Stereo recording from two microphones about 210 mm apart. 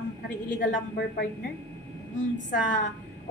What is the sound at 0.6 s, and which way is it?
Speech, 40° left (ahead or behind).